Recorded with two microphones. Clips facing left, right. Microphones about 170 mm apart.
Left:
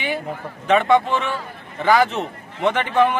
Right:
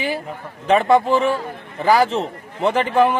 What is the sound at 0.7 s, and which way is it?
A man's voice, 35° right (ahead or behind).